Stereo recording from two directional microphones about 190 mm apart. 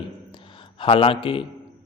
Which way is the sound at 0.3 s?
25° left (ahead or behind).